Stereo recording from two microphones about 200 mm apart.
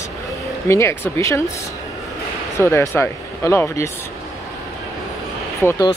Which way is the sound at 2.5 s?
15° left (ahead or behind).